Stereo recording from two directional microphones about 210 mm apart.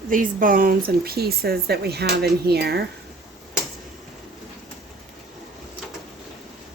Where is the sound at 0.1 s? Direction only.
40° right (ahead or behind).